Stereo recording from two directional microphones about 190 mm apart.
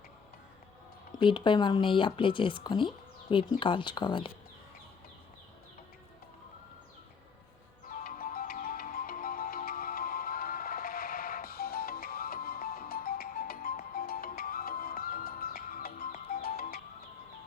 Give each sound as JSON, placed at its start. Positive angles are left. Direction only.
{"t": 1.2, "sound": "speech", "side_deg": 25}
{"t": 7.9, "sound": "music", "side_deg": 45}